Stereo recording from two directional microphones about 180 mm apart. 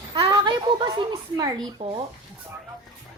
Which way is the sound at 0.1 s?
25° right (ahead or behind).